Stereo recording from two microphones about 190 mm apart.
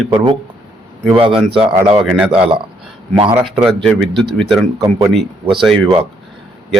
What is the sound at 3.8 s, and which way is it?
Speech, centre (ahead or behind).